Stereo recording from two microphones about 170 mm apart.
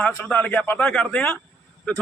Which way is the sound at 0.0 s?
10° left (ahead or behind).